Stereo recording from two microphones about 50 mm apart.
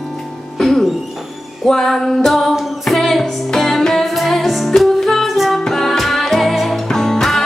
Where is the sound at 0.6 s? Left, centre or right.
Centre.